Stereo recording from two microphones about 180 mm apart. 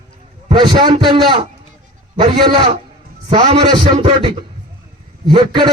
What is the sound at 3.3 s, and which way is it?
Speech, 30° right (ahead or behind).